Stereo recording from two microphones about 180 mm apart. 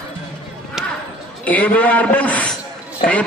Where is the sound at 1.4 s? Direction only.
10° left (ahead or behind).